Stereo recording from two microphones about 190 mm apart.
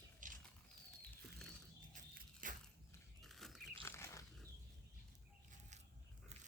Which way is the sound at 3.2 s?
Centre (ahead or behind).